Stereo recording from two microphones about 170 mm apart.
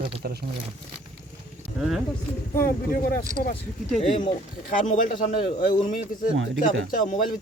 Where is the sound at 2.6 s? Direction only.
55° left (ahead or behind).